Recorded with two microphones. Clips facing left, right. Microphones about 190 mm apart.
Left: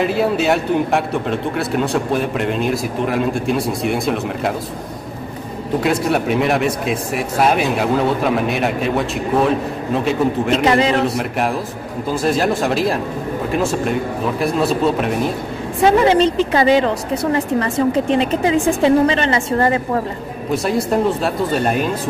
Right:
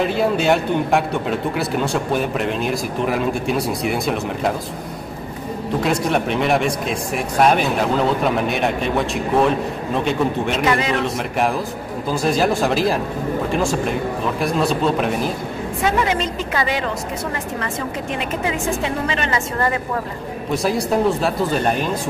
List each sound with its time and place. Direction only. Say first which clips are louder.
0.0 s speech: left 1 dB; centre (ahead or behind)
5.8 s speech: left 2 dB; 5° left (ahead or behind)
10.6 s a woman's voice: left 4 dB; 30° left (ahead or behind)
11.1 s speech: left 1 dB; centre (ahead or behind)
15.8 s a woman's voice: left 8 dB; 30° left (ahead or behind)
20.5 s speech: left 2 dB; centre (ahead or behind)